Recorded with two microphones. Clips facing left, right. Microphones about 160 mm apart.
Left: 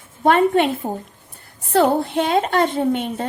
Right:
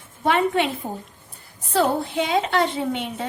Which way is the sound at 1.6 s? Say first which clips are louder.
Left 5 dB; 60° left (ahead or behind).